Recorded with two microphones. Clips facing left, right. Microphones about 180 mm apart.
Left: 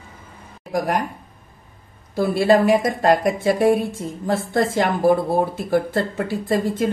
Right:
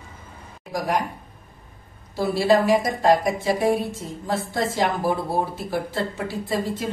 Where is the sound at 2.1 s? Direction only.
55° left (ahead or behind).